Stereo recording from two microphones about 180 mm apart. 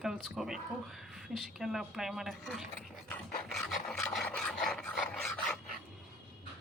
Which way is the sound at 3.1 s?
5° left (ahead or behind).